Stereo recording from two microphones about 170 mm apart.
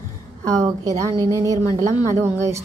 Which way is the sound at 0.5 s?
20° right (ahead or behind).